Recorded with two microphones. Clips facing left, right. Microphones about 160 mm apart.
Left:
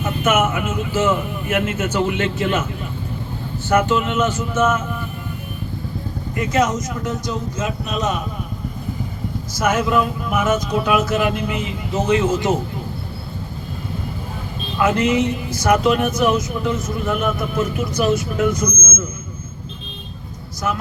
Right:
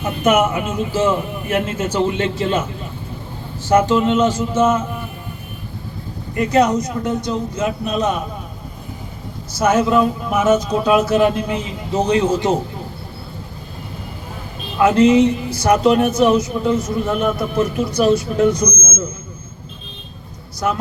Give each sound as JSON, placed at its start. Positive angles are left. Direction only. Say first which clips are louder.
{"t": 0.0, "sound": "speech", "louder": "right 3 dB", "side_deg": -35}
{"t": 3.7, "sound": "speech", "louder": "right 4 dB", "side_deg": -30}
{"t": 6.5, "sound": "speech", "louder": "right 4 dB", "side_deg": -35}
{"t": 9.6, "sound": "speech", "louder": "right 4 dB", "side_deg": -30}
{"t": 14.8, "sound": "speech", "louder": "right 6 dB", "side_deg": -30}